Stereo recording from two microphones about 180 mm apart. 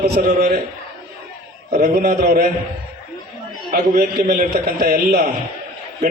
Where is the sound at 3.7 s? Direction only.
55° right (ahead or behind).